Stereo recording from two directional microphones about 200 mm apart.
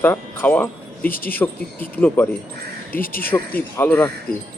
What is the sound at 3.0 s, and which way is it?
Speech, 45° left (ahead or behind).